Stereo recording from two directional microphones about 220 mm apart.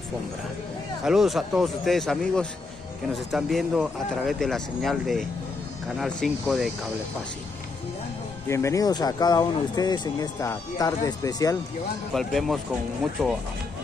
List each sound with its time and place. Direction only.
1.0 s speech: centre (ahead or behind)
8.5 s speech: 15° left (ahead or behind)
12.1 s speech: centre (ahead or behind)